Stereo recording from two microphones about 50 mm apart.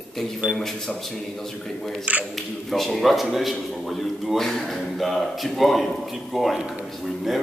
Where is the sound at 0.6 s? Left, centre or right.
Centre.